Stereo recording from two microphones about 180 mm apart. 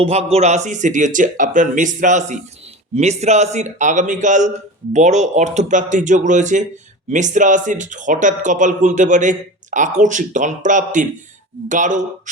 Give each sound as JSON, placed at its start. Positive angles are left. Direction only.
{"t": 0.0, "sound": "speech", "side_deg": -35}